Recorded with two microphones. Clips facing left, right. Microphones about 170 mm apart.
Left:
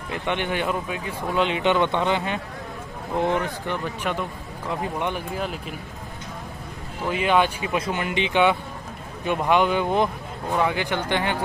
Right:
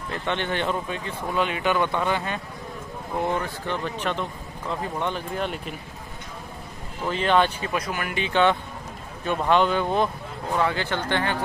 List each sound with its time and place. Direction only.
0.1 s speech: 15° left (ahead or behind)
5.4 s speech: centre (ahead or behind)
7.1 s speech: 10° left (ahead or behind)
7.7 s speech: 25° left (ahead or behind)